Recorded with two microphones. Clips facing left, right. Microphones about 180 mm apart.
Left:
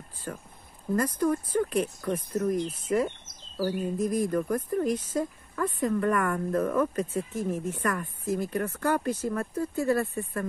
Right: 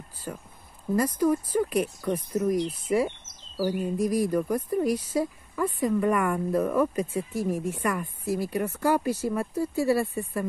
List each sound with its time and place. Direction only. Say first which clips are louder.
0.3 s speech: right 1 dB; 10° right (ahead or behind)